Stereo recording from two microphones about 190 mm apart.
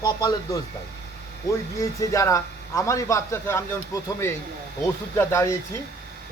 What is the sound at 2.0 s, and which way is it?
A man's voice, 15° left (ahead or behind).